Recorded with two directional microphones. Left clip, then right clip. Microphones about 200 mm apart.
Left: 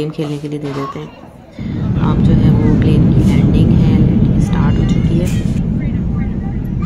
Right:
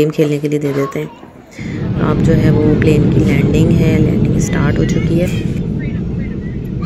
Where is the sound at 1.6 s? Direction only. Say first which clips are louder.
Right 2 dB; 25° right (ahead or behind).